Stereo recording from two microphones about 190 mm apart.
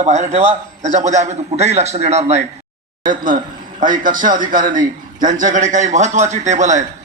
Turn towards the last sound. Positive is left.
turn(degrees=-40)  # may be behind; listen again after turning